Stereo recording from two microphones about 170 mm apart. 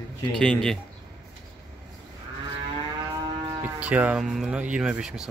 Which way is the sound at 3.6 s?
10° right (ahead or behind).